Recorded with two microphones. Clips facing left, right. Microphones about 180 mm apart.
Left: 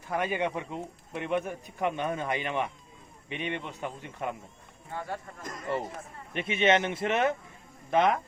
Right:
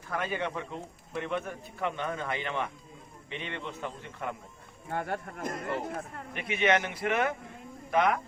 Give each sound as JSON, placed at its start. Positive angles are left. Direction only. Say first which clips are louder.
{"t": 0.1, "sound": "speech", "louder": "left 3 dB", "side_deg": 15}
{"t": 4.9, "sound": "speech", "louder": "right 3 dB", "side_deg": -60}
{"t": 6.3, "sound": "a man's voice", "louder": "left 2 dB", "side_deg": 25}